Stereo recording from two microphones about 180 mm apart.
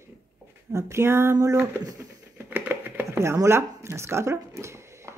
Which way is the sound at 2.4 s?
10° right (ahead or behind).